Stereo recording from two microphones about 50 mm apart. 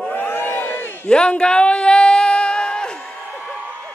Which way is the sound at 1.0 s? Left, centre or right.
Centre.